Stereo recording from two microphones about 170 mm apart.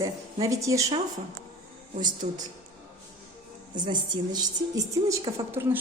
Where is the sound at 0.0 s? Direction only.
20° right (ahead or behind).